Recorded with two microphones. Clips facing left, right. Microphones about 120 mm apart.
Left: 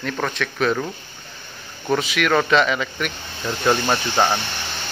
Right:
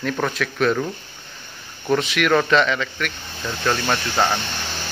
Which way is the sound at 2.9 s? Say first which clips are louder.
Left 1 dB; 20° left (ahead or behind).